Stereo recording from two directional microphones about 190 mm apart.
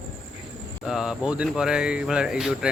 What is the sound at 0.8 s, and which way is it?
Speech, 5° right (ahead or behind).